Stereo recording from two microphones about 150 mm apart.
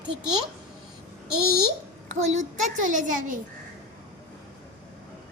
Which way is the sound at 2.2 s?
55° right (ahead or behind).